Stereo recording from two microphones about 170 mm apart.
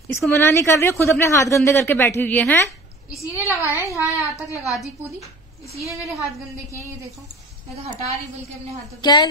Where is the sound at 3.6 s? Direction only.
10° right (ahead or behind).